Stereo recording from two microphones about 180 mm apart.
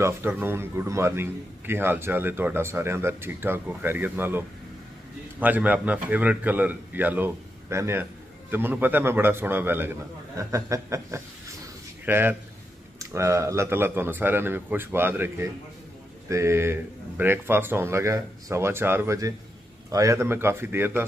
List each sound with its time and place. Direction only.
0.0 s a man's voice: 10° right (ahead or behind)